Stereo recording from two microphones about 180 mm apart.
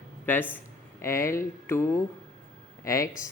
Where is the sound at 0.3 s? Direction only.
10° left (ahead or behind).